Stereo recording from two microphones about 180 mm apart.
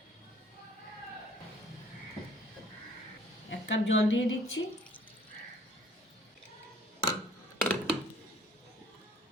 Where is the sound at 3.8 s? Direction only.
85° left.